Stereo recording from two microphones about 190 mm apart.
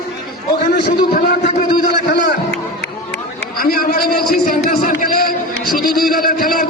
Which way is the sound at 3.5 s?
50° left (ahead or behind).